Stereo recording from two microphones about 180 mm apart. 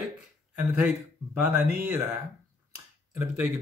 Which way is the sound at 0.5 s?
10° right (ahead or behind).